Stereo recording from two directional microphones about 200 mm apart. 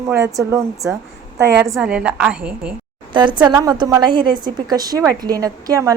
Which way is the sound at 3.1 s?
25° right (ahead or behind).